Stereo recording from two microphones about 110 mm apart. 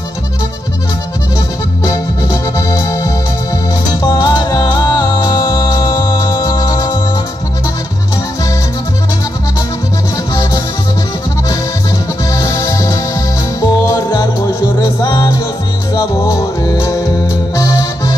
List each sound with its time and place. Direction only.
1.9 s music: 30° left (ahead or behind)
10.1 s music: 35° left (ahead or behind)
12.3 s music: 30° left (ahead or behind)